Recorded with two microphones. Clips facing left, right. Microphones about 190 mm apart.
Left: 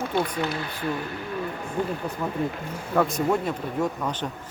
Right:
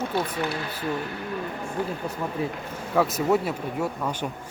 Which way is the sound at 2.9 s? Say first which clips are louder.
Right 1 dB; 5° right (ahead or behind).